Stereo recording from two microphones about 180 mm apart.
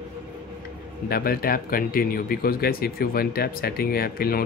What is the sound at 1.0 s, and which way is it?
Speech, 55° left (ahead or behind).